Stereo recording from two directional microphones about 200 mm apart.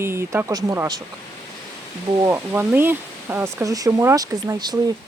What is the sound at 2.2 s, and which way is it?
Speech, 10° right (ahead or behind).